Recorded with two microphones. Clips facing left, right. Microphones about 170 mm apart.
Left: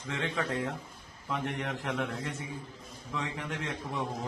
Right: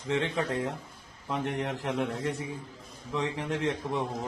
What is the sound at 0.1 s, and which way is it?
A man's voice, 30° right (ahead or behind).